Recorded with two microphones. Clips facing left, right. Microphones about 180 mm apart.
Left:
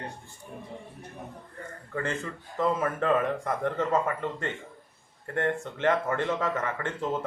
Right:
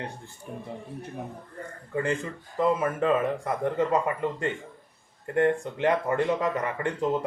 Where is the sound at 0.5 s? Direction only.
80° right.